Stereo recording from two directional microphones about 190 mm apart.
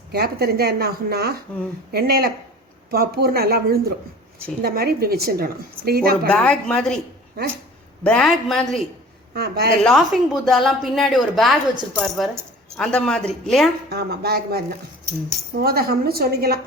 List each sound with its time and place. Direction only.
0.1 s speech: 55° right (ahead or behind)
6.2 s a woman's voice: 5° left (ahead or behind)
8.0 s a woman's voice: 5° left (ahead or behind)
9.3 s speech: 55° right (ahead or behind)
9.8 s a woman's voice: centre (ahead or behind)
13.9 s speech: 55° right (ahead or behind)